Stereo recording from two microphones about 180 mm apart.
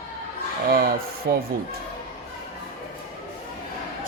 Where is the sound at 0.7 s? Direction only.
55° right (ahead or behind).